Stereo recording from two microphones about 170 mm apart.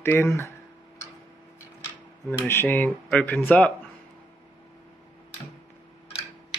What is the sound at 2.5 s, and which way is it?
Speech, 10° left (ahead or behind).